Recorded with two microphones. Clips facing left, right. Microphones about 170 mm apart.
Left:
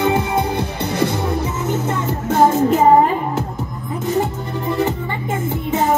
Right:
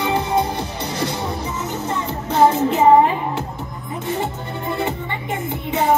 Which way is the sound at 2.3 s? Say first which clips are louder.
Left 2 dB; 45° left (ahead or behind).